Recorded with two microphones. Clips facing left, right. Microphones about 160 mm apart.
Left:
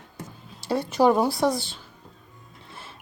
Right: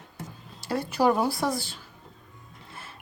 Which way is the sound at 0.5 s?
30° left (ahead or behind).